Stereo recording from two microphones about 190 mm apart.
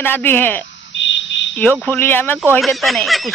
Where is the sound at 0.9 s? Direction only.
70° left (ahead or behind).